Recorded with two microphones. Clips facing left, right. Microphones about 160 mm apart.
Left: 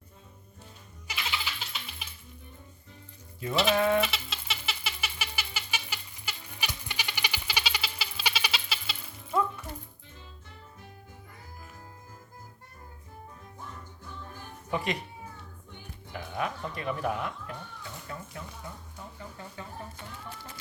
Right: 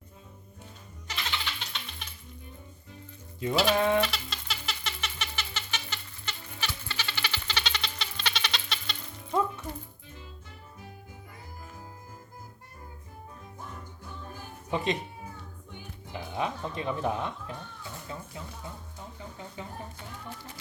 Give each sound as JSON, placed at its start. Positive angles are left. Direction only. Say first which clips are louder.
{"t": 1.0, "sound": "music", "louder": "even", "side_deg": 5}
{"t": 3.5, "sound": "goat", "louder": "right 1 dB", "side_deg": 0}
{"t": 3.8, "sound": "goat", "louder": "left 2 dB", "side_deg": -25}
{"t": 4.0, "sound": "a sound", "louder": "right 1 dB", "side_deg": 0}
{"t": 14.7, "sound": "cat", "louder": "right 2 dB", "side_deg": -25}
{"t": 16.1, "sound": "speech", "louder": "right 1 dB", "side_deg": -25}
{"t": 18.1, "sound": "goat", "louder": "right 1 dB", "side_deg": -20}
{"t": 19.6, "sound": "speech", "louder": "right 3 dB", "side_deg": -20}